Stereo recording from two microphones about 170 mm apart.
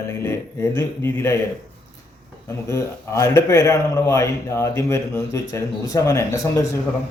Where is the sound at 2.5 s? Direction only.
15° left (ahead or behind).